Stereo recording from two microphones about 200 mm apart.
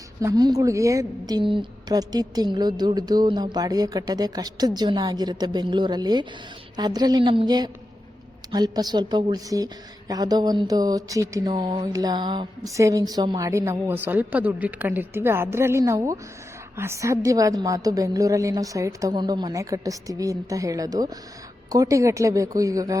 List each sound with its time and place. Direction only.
0.2 s a woman's voice: 15° right (ahead or behind)